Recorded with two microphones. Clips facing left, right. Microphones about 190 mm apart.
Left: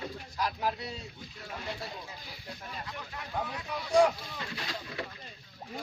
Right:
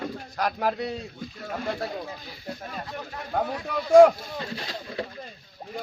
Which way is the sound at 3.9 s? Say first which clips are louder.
Right 10 dB; 50° right (ahead or behind).